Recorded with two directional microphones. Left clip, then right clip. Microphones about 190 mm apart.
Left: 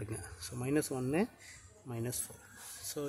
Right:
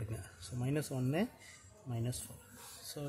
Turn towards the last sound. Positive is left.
turn(degrees=15)  # may be behind; listen again after turning